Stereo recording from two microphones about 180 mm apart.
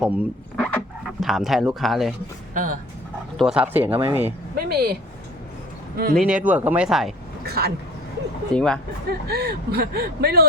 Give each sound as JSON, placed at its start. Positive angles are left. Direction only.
{"t": 0.0, "sound": "speech", "side_deg": -10}
{"t": 0.5, "sound": "dog", "side_deg": 5}
{"t": 1.2, "sound": "speech", "side_deg": 0}
{"t": 2.5, "sound": "speech", "side_deg": -50}
{"t": 3.3, "sound": "speech", "side_deg": -5}
{"t": 4.5, "sound": "speech", "side_deg": -60}
{"t": 6.1, "sound": "speech", "side_deg": -5}
{"t": 7.4, "sound": "speech", "side_deg": -60}
{"t": 8.5, "sound": "speech", "side_deg": 5}
{"t": 9.2, "sound": "speech", "side_deg": -60}